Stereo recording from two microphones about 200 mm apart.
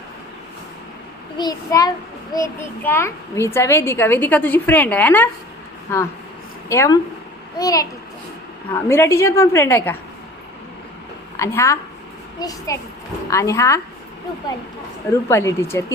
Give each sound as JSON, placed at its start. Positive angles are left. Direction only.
{"t": 1.4, "sound": "a child's voice", "side_deg": 20}
{"t": 6.7, "sound": "a child's voice", "side_deg": 15}
{"t": 11.3, "sound": "a woman's voice", "side_deg": 15}
{"t": 15.3, "sound": "a child's voice", "side_deg": 15}